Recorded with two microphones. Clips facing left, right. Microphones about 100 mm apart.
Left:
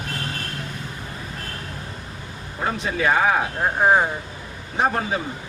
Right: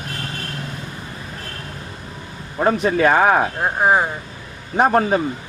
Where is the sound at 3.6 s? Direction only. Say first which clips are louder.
Right 1 dB; 10° right (ahead or behind).